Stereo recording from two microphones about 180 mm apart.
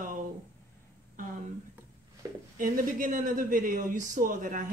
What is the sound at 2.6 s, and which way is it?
Speech, 45° right (ahead or behind).